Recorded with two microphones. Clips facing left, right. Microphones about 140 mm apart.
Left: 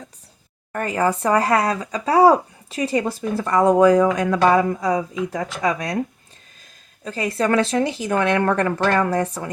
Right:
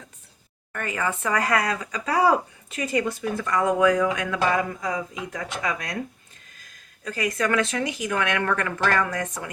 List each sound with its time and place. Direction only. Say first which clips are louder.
0.7 s speech: left 7 dB; 35° left (ahead or behind)
7.0 s speech: left 4 dB; 25° left (ahead or behind)